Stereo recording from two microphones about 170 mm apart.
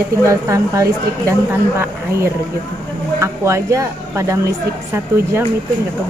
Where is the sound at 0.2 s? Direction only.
15° right (ahead or behind).